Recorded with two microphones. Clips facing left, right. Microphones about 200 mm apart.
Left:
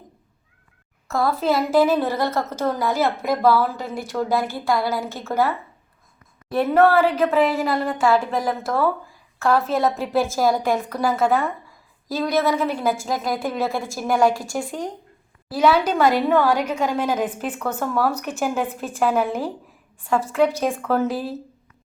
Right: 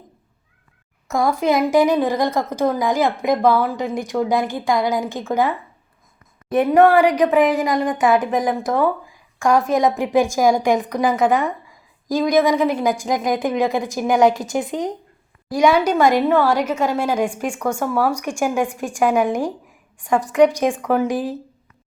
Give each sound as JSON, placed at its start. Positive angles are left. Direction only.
{"t": 1.0, "sound": "a woman's voice", "side_deg": -15}